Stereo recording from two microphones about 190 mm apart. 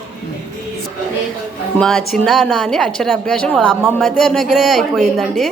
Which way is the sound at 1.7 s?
Centre (ahead or behind).